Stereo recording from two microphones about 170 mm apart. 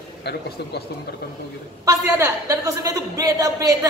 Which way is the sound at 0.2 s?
75° left (ahead or behind).